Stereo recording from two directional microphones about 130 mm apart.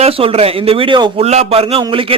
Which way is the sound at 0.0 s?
50° right (ahead or behind).